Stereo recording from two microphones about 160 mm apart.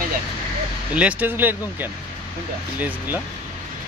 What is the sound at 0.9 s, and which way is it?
Speech, 10° right (ahead or behind).